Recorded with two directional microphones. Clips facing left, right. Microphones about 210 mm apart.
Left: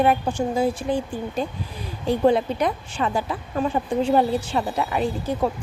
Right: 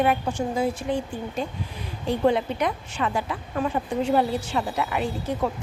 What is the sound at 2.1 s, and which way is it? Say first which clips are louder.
A woman's voice: left 3 dB; 35° left (ahead or behind).